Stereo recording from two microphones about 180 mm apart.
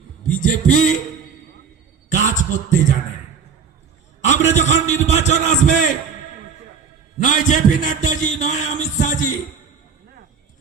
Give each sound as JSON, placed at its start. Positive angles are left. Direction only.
{"t": 0.3, "sound": "a man's voice", "side_deg": 45}
{"t": 2.0, "sound": "a sound", "side_deg": 45}
{"t": 4.2, "sound": "a man's voice", "side_deg": 40}
{"t": 7.2, "sound": "a man's voice", "side_deg": 45}